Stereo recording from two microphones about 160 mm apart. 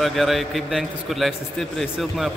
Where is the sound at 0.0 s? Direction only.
Centre (ahead or behind).